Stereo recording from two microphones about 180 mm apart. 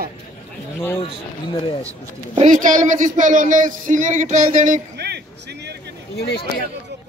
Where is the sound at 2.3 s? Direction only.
45° right (ahead or behind).